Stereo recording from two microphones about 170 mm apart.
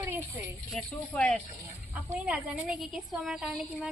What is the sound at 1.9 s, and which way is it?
A woman's voice, 10° right (ahead or behind).